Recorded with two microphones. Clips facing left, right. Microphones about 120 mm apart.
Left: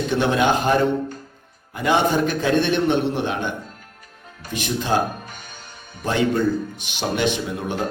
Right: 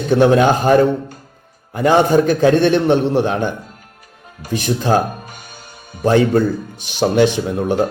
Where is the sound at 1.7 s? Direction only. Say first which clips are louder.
Right 7 dB; 40° right (ahead or behind).